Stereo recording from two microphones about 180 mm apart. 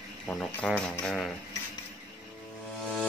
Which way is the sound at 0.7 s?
Centre (ahead or behind).